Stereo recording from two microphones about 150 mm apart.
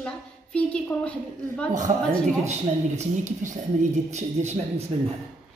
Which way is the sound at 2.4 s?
50° right (ahead or behind).